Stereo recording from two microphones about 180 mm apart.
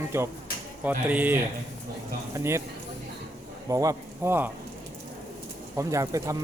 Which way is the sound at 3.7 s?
20° right (ahead or behind).